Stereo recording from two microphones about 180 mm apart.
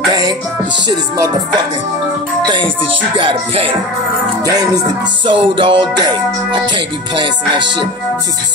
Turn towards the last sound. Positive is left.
turn(degrees=-25)  # may be behind; listen again after turning